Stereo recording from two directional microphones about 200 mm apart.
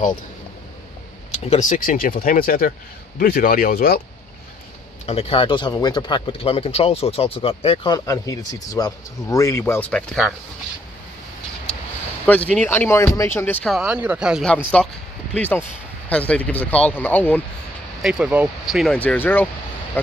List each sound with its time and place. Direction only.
1.3 s speech: 30° left (ahead or behind); by 4.0 s 50° left (ahead or behind)
5.0 s speech: 30° left (ahead or behind); by 10.3 s centre (ahead or behind)
12.4 s speech: 10° left (ahead or behind)
13.7 s speech: 5° right (ahead or behind)
18.0 s speech: 5° right (ahead or behind)